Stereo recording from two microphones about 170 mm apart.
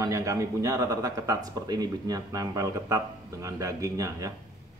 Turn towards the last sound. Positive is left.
turn(degrees=-20)  # may be behind; listen again after turning